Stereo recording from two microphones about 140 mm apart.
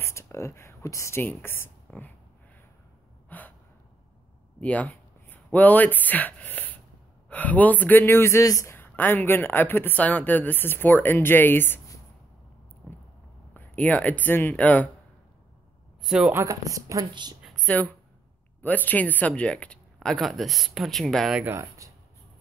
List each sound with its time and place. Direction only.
0.0 s speech: 20° left (ahead or behind)
3.3 s gasp: 10° left (ahead or behind)
4.6 s speech: 10° left (ahead or behind)
13.5 s speech: 10° left (ahead or behind)
16.0 s speech: 5° right (ahead or behind)
16.3 s a woman's voice: 25° right (ahead or behind)
17.6 s speech: 10° left (ahead or behind); by 21.5 s 5° right (ahead or behind)
21.5 s speech: 25° right (ahead or behind)